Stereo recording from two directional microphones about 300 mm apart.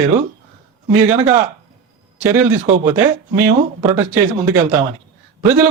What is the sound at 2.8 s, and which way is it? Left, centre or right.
Speech, centre.